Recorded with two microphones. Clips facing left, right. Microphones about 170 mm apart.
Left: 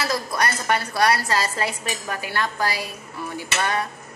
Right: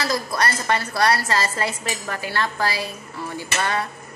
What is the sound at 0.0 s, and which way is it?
A woman's voice, 10° left (ahead or behind).